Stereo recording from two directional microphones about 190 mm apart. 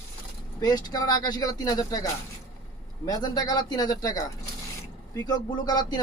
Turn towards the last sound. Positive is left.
turn(degrees=20)  # may be behind; listen again after turning